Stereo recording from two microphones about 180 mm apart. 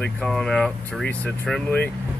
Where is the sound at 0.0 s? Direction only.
5° left (ahead or behind).